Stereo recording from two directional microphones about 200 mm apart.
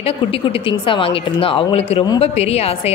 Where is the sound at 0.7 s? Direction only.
25° left (ahead or behind).